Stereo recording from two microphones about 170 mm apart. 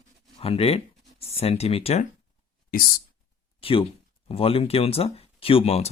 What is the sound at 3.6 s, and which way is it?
Speech, 30° left (ahead or behind).